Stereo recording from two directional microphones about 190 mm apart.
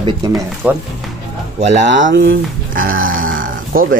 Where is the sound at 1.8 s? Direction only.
70° right (ahead or behind); by 2.9 s 50° right (ahead or behind).